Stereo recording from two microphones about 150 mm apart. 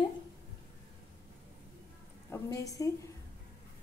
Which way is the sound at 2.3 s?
20° left (ahead or behind).